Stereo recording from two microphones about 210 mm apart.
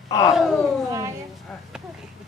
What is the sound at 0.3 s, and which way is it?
Speech, centre (ahead or behind).